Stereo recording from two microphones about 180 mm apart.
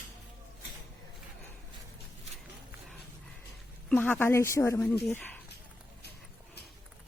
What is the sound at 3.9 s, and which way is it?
Speech, 5° left (ahead or behind).